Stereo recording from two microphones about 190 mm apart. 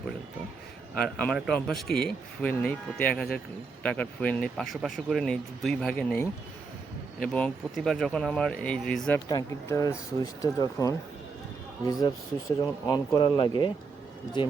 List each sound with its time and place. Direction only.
0.9 s speech: 5° left (ahead or behind)
7.3 s speech: 5° left (ahead or behind)
9.3 s speech: 15° left (ahead or behind)